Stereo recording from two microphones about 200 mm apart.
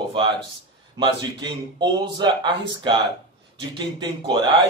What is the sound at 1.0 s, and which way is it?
Speech, 20° right (ahead or behind).